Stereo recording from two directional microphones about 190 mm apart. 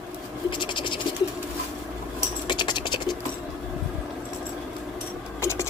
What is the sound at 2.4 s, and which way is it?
Scratch, 25° left (ahead or behind).